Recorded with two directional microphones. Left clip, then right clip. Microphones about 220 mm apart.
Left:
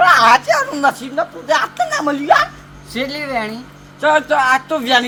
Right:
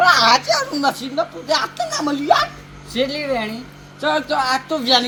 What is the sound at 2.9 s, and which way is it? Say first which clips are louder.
Speech: even; 10° right (ahead or behind).